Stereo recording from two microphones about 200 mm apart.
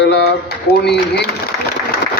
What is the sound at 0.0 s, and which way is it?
A man's voice, 55° left (ahead or behind).